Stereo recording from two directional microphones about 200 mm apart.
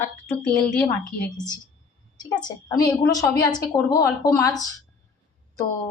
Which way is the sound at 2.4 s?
20° left (ahead or behind).